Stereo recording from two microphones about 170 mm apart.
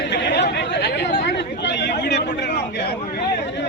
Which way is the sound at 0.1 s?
85° left.